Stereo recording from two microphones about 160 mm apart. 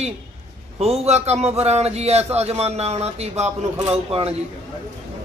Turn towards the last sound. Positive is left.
turn(degrees=-40)  # may be behind; listen again after turning